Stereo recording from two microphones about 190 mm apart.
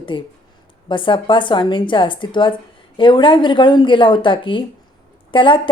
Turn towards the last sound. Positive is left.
turn(degrees=25)  # may be behind; listen again after turning